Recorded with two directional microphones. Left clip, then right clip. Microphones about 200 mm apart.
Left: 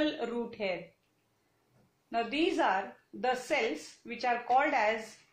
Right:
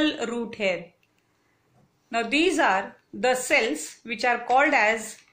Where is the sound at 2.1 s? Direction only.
30° right (ahead or behind).